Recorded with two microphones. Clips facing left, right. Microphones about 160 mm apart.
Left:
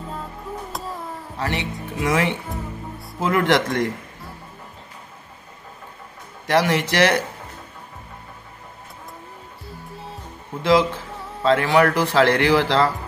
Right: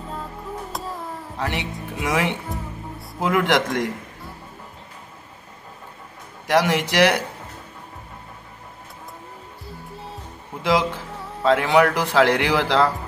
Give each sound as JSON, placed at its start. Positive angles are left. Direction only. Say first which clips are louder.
{"t": 0.7, "sound": "a sound", "louder": "even", "side_deg": 0}
{"t": 1.5, "sound": "speech", "louder": "left 2 dB", "side_deg": -15}
{"t": 6.4, "sound": "speech", "louder": "even", "side_deg": -15}
{"t": 10.6, "sound": "speech", "louder": "left 3 dB", "side_deg": -15}